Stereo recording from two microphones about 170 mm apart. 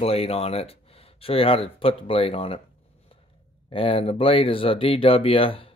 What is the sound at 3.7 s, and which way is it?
Speech, 30° left (ahead or behind).